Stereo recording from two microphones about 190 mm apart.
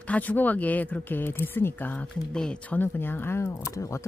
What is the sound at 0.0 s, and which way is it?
Speech, 10° left (ahead or behind).